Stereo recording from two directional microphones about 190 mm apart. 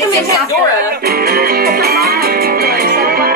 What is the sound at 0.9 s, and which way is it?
Music, 50° right (ahead or behind).